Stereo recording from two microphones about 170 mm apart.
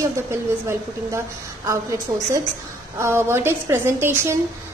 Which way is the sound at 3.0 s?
15° right (ahead or behind).